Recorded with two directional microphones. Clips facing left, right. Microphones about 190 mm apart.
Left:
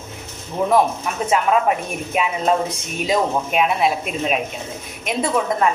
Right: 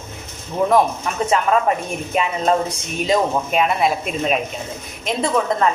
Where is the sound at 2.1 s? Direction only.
5° left (ahead or behind).